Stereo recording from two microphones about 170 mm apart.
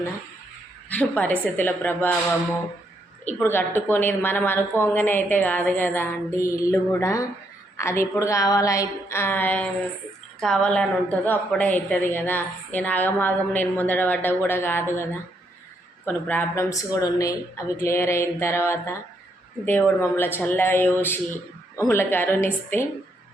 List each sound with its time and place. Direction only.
0.9 s a woman's voice: 10° left (ahead or behind)
3.2 s a woman's voice: 10° left (ahead or behind)
16.0 s a woman's voice: 10° left (ahead or behind)